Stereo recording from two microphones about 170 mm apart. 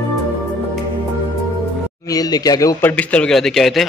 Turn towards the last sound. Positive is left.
turn(degrees=0)  # may be behind; listen again after turning